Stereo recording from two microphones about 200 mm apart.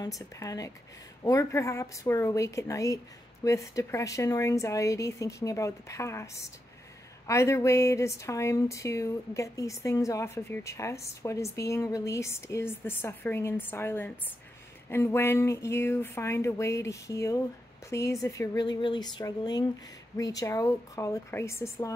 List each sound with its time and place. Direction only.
0.4 s speech: 15° left (ahead or behind)